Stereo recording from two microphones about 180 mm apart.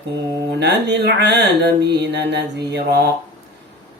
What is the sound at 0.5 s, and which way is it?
Mantra, 70° right (ahead or behind).